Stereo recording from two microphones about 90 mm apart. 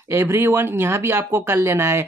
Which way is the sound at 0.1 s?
25° right (ahead or behind).